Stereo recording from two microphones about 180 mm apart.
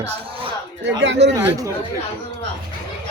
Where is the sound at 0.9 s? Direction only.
75° right (ahead or behind).